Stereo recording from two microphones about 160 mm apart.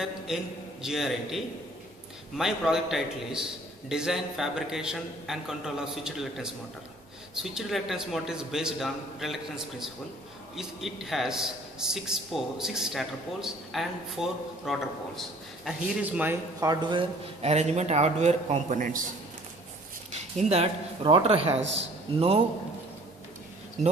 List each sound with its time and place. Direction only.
0.3 s a man's voice: 5° right (ahead or behind)
7.5 s a man's voice: 5° right (ahead or behind); by 17.0 s 20° right (ahead or behind)
17.0 s a man's voice: 40° right (ahead or behind)
20.1 s speech: 45° right (ahead or behind)